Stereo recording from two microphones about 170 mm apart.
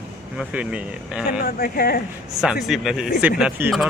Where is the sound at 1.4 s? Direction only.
60° left (ahead or behind).